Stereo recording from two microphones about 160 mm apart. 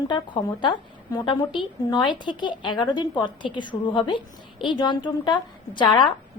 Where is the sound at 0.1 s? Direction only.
30° left (ahead or behind).